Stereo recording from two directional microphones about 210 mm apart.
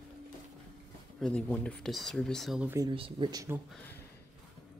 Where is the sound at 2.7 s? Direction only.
20° right (ahead or behind).